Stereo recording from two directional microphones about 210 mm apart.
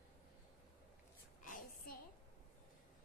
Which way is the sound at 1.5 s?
40° left (ahead or behind).